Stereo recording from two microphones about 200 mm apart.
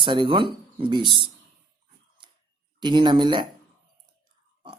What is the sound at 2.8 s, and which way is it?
Speech, 20° right (ahead or behind).